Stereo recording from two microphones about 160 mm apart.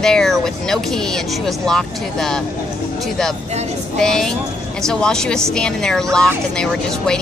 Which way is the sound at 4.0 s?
5° left (ahead or behind).